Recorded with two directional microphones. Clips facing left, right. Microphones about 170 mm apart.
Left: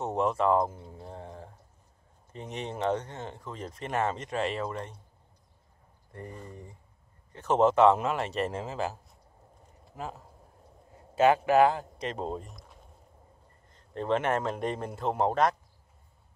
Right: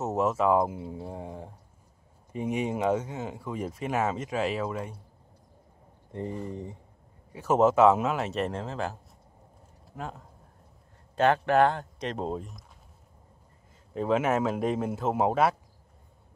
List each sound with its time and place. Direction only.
0.0 s speech: 5° right (ahead or behind)
6.1 s speech: 20° right (ahead or behind)
7.3 s speech: 5° right (ahead or behind)
13.9 s speech: 5° right (ahead or behind)